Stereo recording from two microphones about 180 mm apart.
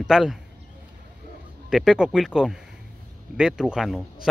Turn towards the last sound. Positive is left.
turn(degrees=0)  # may be behind; listen again after turning